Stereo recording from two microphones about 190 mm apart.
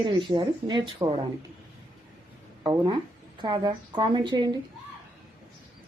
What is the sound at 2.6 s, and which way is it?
A woman's voice, 25° right (ahead or behind).